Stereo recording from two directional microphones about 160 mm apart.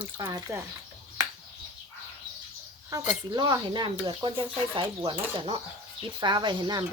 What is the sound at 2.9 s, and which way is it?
Speech, 20° right (ahead or behind).